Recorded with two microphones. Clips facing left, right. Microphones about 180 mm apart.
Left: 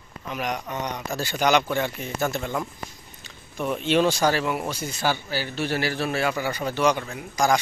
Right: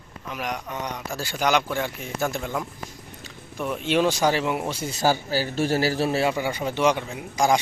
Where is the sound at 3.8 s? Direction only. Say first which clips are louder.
Even; 10° right (ahead or behind).